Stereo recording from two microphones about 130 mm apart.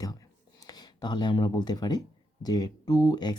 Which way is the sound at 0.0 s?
30° left (ahead or behind).